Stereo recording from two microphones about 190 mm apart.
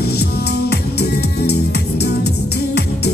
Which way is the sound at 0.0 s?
60° left (ahead or behind).